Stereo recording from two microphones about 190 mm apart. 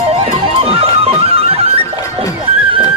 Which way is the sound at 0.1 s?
30° right (ahead or behind).